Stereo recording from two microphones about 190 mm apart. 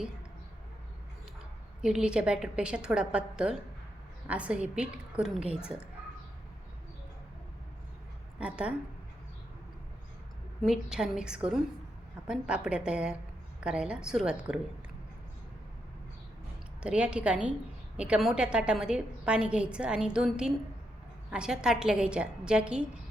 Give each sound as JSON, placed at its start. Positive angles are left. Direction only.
{"t": 1.8, "sound": "a woman's voice", "side_deg": -5}
{"t": 8.4, "sound": "a woman's voice", "side_deg": -5}
{"t": 10.6, "sound": "a woman's voice", "side_deg": 0}
{"t": 16.8, "sound": "a woman's voice", "side_deg": -5}